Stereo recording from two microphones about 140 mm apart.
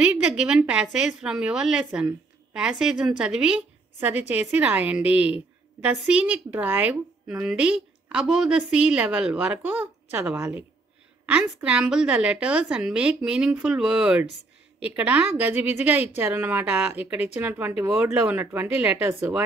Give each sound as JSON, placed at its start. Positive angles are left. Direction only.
{"t": 0.0, "sound": "a woman's voice", "side_deg": -10}